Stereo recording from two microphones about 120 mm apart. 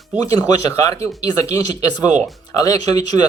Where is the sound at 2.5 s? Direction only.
30° left (ahead or behind).